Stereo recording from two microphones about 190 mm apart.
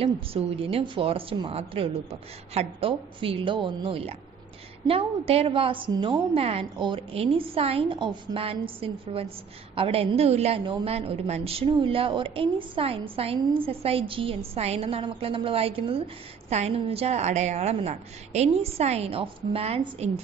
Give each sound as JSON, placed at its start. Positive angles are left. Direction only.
{"t": 0.0, "sound": "a woman's voice", "side_deg": -30}